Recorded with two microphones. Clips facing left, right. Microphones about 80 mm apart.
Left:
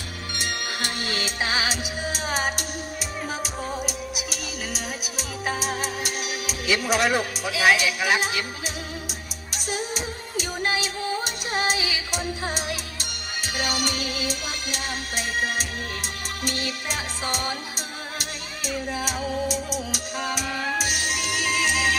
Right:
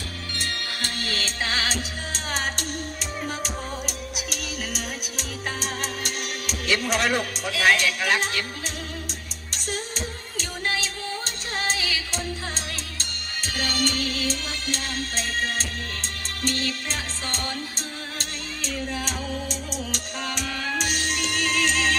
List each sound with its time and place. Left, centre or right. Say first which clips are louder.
0.3 s music: left 2 dB; centre
9.5 s music: left 3 dB; centre